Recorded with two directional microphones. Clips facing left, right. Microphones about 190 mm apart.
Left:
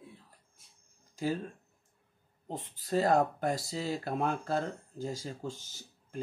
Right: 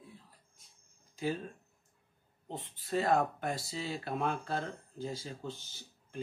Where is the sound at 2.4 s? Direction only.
40° left (ahead or behind).